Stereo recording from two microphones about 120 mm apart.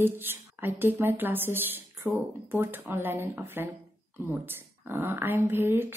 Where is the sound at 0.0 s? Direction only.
20° right (ahead or behind).